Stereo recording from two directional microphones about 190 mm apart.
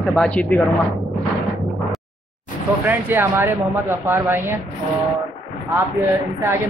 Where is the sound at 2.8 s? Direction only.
10° right (ahead or behind).